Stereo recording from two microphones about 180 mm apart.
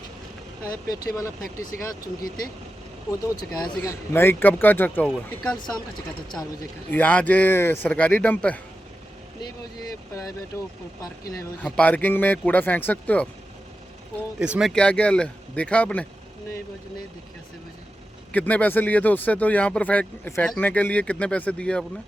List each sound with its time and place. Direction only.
0.6 s speech: 20° left (ahead or behind)
3.2 s speech: 20° left (ahead or behind)
3.8 s speech: 10° left (ahead or behind)
6.9 s speech: 10° left (ahead or behind)
11.0 s speech: 20° left (ahead or behind)
11.6 s speech: 10° left (ahead or behind)
14.3 s speech: 5° right (ahead or behind)
14.7 s speech: 5° left (ahead or behind)
18.3 s speech: 10° left (ahead or behind)